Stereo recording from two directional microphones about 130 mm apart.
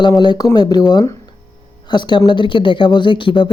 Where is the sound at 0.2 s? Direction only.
35° left (ahead or behind).